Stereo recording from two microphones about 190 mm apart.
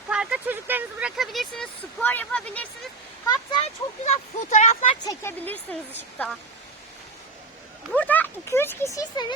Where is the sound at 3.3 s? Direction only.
30° left (ahead or behind).